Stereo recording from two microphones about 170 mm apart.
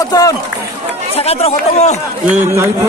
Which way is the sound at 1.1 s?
35° left (ahead or behind).